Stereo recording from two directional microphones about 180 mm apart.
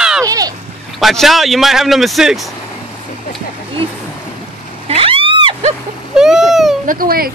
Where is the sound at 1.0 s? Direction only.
Centre (ahead or behind).